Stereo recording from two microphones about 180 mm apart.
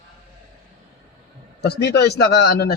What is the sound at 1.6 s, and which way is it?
A man's voice, 65° left (ahead or behind).